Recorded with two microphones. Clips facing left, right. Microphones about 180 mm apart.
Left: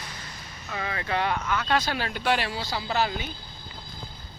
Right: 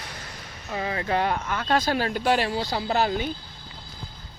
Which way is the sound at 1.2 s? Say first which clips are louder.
Right 1 dB; 45° right (ahead or behind).